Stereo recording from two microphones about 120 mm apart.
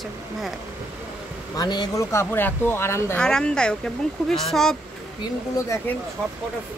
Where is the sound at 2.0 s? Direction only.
20° left (ahead or behind).